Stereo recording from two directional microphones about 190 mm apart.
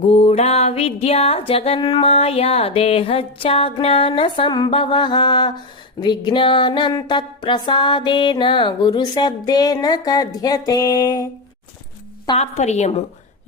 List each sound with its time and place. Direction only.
0.1 s music: 30° left (ahead or behind)
12.4 s a woman's voice: 35° left (ahead or behind)